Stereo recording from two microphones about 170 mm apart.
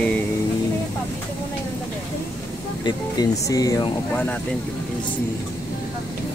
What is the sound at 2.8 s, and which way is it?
Speech, 20° left (ahead or behind).